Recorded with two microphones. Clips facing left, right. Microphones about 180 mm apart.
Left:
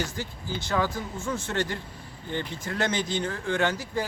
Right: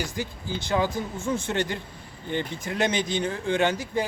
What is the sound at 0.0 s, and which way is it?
Speech, 15° right (ahead or behind).